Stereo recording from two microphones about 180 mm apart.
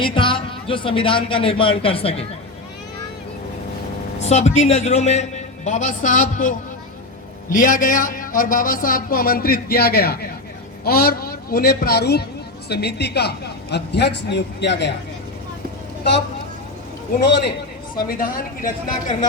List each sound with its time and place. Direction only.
0.0 s music: 25° left (ahead or behind)
0.7 s a man's voice: 30° left (ahead or behind)
4.2 s a man's voice: 40° left (ahead or behind); by 14.9 s 75° left (ahead or behind)
17.2 s speech: 70° left (ahead or behind)
18.1 s a man's voice: 55° left (ahead or behind)